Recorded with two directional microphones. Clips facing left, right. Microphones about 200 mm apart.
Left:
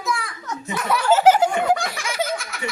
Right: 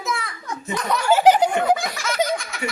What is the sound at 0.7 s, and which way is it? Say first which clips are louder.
Speech: left 1 dB; 5° left (ahead or behind).